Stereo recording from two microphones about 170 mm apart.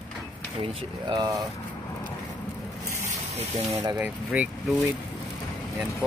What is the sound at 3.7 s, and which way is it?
Speech, 20° right (ahead or behind).